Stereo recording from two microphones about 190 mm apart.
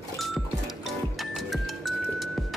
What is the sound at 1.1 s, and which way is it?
Music, centre (ahead or behind).